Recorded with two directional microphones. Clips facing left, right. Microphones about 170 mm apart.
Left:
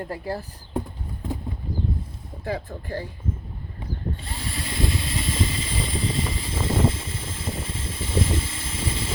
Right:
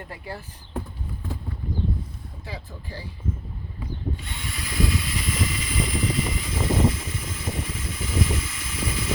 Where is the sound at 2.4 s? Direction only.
55° left (ahead or behind).